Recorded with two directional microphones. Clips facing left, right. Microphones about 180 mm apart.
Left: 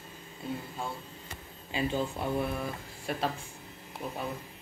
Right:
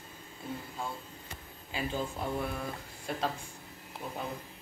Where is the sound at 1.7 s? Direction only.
20° left (ahead or behind).